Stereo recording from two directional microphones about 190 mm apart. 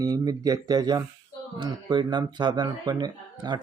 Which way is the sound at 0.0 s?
20° right (ahead or behind).